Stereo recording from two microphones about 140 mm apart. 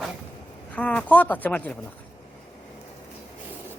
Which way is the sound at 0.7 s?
10° left (ahead or behind).